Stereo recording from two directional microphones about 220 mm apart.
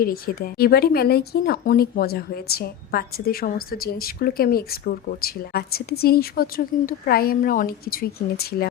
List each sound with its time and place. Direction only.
0.0 s speech: 40° left (ahead or behind)